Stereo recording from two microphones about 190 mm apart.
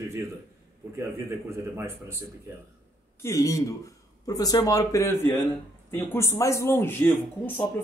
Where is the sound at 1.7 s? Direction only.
15° right (ahead or behind).